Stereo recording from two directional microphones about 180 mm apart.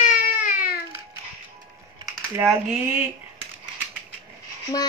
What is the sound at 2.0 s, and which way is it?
Typing, 15° right (ahead or behind).